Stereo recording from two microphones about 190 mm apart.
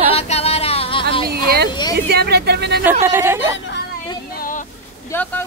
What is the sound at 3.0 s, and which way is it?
Speech, 15° right (ahead or behind).